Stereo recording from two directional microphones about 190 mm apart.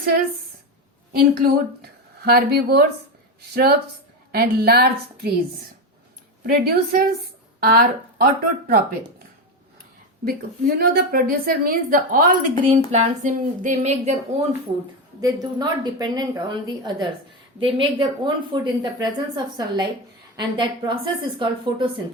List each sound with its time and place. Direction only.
1.2 s speech: 55° right (ahead or behind)
6.4 s a woman's voice: 50° right (ahead or behind)
10.2 s a woman's voice: 55° right (ahead or behind); by 14.2 s 35° right (ahead or behind)
15.2 s a woman's voice: 20° right (ahead or behind)